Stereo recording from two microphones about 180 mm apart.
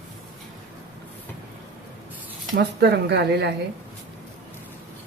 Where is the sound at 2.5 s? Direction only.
70° right (ahead or behind).